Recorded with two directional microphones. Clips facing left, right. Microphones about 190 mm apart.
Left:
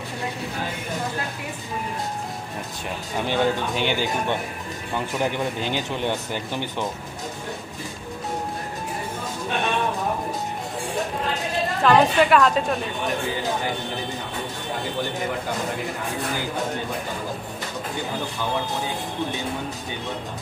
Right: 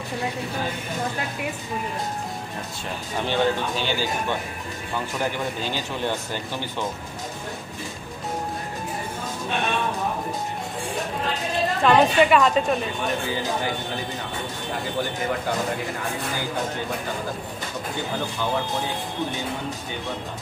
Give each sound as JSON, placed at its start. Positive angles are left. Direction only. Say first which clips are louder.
{"t": 3.2, "sound": "speech", "louder": "even", "side_deg": 15}
{"t": 11.8, "sound": "speech", "louder": "even", "side_deg": 0}